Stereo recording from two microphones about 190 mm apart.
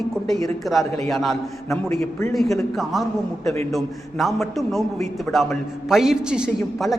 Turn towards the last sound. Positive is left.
turn(degrees=0)  # may be behind; listen again after turning